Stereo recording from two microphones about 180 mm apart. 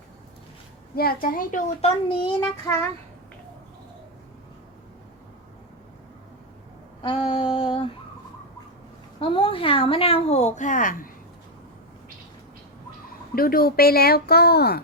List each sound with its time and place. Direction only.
0.9 s a child's voice: 55° left (ahead or behind)
2.0 s child singing: 25° left (ahead or behind)
7.0 s female singing: 30° left (ahead or behind)
9.2 s speech: 30° left (ahead or behind); by 11.1 s 50° left (ahead or behind)
13.3 s speech: 55° left (ahead or behind)